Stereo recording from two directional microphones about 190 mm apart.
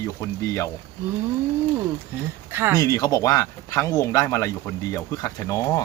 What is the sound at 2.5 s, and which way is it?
Speech, 10° right (ahead or behind).